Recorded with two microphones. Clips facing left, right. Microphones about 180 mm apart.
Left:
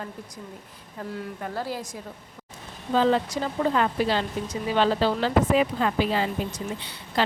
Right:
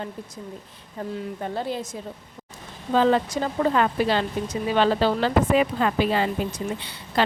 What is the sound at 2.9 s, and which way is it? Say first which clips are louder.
Speech: right 2 dB; 55° right (ahead or behind).